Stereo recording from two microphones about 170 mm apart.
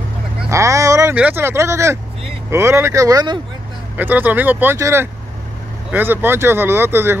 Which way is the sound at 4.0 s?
10° right (ahead or behind).